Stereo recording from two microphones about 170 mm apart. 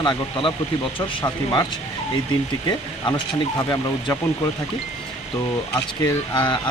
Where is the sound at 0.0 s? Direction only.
30° left (ahead or behind).